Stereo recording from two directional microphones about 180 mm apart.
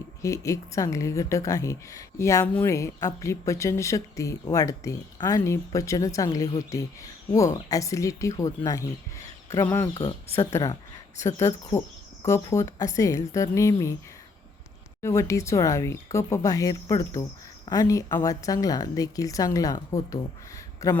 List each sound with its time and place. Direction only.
0.2 s a woman's voice: 15° left (ahead or behind)
15.0 s a woman's voice: 15° left (ahead or behind)